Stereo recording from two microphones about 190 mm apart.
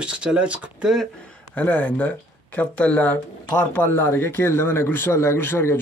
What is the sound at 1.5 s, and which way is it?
Speech, 10° left (ahead or behind).